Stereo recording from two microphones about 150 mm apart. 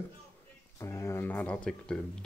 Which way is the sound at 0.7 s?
20° left (ahead or behind).